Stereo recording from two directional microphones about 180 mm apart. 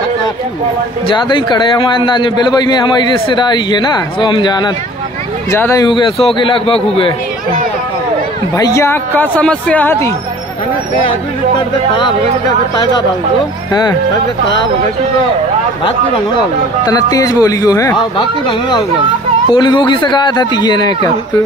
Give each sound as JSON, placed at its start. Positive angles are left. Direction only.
{"t": 1.0, "sound": "a man's voice", "side_deg": 25}
{"t": 8.5, "sound": "speech", "side_deg": 20}
{"t": 11.5, "sound": "a man's voice", "side_deg": 25}
{"t": 16.8, "sound": "a man's voice", "side_deg": 20}
{"t": 19.5, "sound": "a man's voice", "side_deg": 25}